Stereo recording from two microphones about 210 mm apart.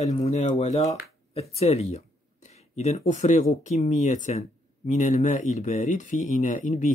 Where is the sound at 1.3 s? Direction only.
30° left (ahead or behind).